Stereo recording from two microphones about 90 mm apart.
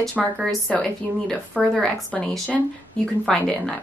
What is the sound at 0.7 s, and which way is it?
A woman's voice, 10° left (ahead or behind).